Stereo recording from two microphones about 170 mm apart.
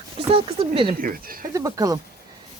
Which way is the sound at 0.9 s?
55° right (ahead or behind).